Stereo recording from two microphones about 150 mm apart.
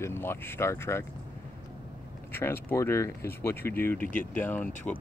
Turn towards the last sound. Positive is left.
turn(degrees=10)  # may be behind; listen again after turning